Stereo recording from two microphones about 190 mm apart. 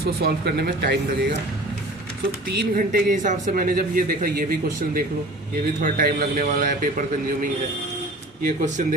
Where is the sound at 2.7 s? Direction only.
45° right (ahead or behind).